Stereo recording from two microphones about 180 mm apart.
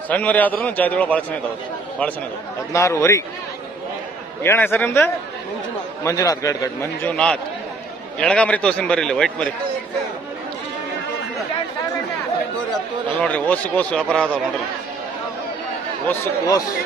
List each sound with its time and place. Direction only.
0.1 s a man's voice: 10° left (ahead or behind)
2.7 s a man's voice: 15° left (ahead or behind)
4.4 s a man's voice: 15° left (ahead or behind)
13.2 s a man's voice: 10° left (ahead or behind)
16.1 s speech: 20° left (ahead or behind)